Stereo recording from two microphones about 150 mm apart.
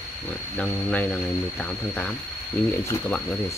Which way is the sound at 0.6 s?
10° left (ahead or behind).